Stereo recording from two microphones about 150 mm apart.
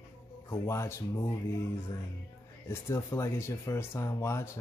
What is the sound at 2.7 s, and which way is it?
Speech, 20° left (ahead or behind).